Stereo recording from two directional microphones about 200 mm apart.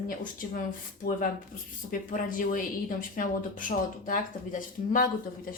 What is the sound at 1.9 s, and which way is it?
Speech, 45° left (ahead or behind).